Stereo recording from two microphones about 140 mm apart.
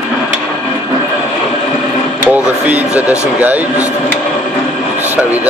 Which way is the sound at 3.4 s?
10° right (ahead or behind).